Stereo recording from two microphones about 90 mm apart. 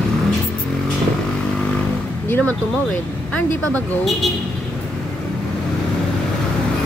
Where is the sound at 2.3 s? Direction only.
20° left (ahead or behind).